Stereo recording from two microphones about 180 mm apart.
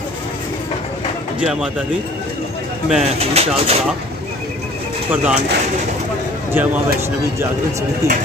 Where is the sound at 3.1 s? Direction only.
35° right (ahead or behind).